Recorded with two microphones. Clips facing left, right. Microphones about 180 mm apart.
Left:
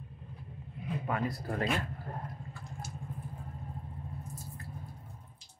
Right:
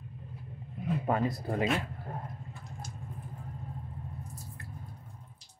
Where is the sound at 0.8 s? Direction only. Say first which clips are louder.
Right 7 dB; 50° right (ahead or behind).